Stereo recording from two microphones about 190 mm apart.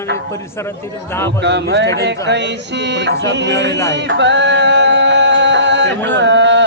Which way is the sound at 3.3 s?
70° right (ahead or behind).